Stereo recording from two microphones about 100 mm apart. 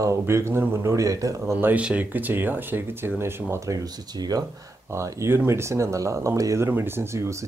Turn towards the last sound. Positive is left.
turn(degrees=-30)  # may be behind; listen again after turning